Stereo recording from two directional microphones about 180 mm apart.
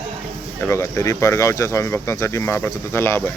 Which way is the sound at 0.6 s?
15° left (ahead or behind).